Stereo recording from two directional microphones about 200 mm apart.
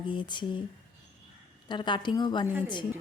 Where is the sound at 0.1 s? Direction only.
25° left (ahead or behind).